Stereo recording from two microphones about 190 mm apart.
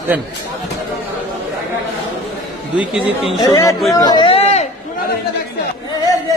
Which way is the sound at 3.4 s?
20° left (ahead or behind).